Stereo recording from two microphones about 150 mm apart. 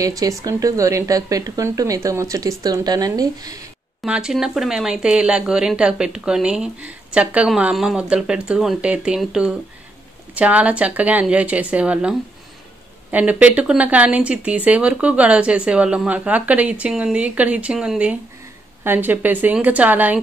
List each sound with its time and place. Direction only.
0.0 s speech: 25° right (ahead or behind)
4.0 s speech: 5° right (ahead or behind)